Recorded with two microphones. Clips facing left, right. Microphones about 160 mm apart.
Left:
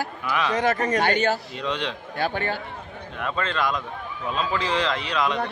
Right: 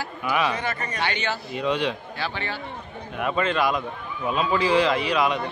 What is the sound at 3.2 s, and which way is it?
A man's voice, 10° right (ahead or behind).